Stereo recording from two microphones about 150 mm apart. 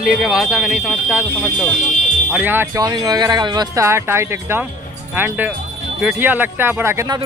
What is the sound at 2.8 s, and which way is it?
Speech, 25° right (ahead or behind).